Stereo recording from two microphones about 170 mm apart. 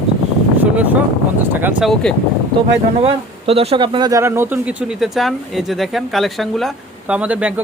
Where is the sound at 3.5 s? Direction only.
35° right (ahead or behind).